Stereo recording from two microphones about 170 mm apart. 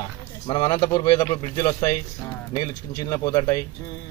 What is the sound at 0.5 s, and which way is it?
Speech, 25° left (ahead or behind).